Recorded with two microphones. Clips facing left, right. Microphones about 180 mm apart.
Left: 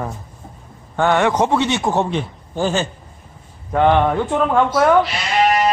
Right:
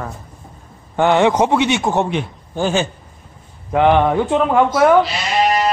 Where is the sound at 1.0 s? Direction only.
20° right (ahead or behind).